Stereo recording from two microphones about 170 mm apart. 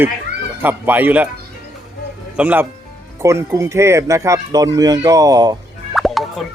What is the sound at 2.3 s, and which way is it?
Speech, 10° right (ahead or behind).